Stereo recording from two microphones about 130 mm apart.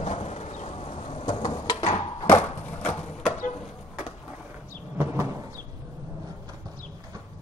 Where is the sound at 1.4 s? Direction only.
35° left (ahead or behind).